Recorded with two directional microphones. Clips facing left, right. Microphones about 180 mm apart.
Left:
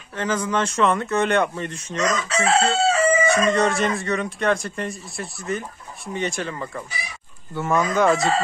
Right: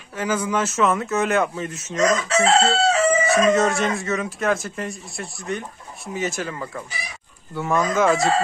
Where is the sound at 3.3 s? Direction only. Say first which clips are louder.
Right 1 dB; centre (ahead or behind).